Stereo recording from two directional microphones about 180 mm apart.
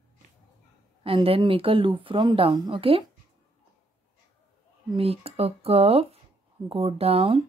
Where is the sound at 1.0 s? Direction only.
30° right (ahead or behind).